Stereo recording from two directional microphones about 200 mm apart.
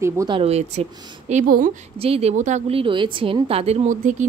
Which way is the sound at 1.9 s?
30° right (ahead or behind).